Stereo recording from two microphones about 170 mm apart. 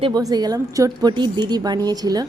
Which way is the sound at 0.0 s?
20° right (ahead or behind).